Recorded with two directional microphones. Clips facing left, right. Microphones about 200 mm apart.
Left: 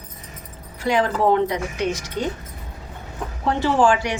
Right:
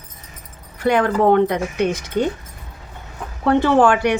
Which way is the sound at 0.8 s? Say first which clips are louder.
Right 4 dB; 55° right (ahead or behind).